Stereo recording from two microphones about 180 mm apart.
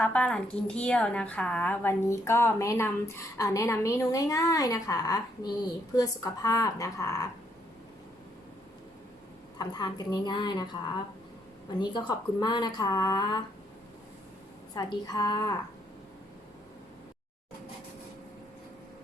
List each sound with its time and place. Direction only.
0.0 s a woman's voice: 5° left (ahead or behind)
9.6 s speech: 20° left (ahead or behind)
11.8 s speech: 25° left (ahead or behind)
14.8 s speech: 20° left (ahead or behind)